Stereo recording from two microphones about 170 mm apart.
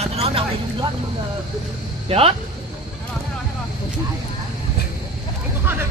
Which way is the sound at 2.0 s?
35° right (ahead or behind).